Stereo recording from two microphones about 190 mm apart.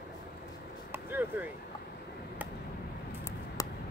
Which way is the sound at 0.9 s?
10° right (ahead or behind).